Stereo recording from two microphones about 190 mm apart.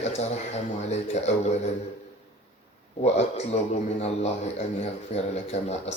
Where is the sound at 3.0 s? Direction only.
35° left (ahead or behind).